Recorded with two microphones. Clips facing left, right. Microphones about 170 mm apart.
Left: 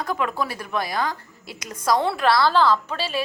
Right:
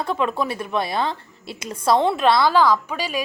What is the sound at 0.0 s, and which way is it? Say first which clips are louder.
A woman's voice: right 3 dB; 25° right (ahead or behind).